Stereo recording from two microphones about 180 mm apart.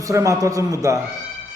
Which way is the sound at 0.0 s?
15° right (ahead or behind).